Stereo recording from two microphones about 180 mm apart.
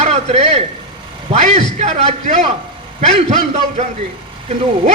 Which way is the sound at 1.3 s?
35° right (ahead or behind).